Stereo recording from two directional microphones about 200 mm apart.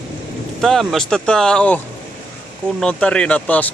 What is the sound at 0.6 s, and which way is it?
Speech, centre (ahead or behind).